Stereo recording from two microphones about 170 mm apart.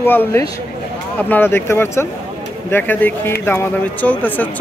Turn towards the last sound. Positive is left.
turn(degrees=10)  # may be behind; listen again after turning